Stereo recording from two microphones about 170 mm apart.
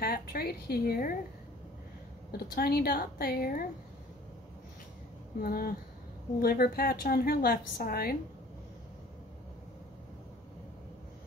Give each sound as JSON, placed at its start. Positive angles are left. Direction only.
{"t": 0.0, "sound": "a woman's voice", "side_deg": 60}
{"t": 2.3, "sound": "a woman's voice", "side_deg": 65}
{"t": 5.4, "sound": "a woman's voice", "side_deg": 60}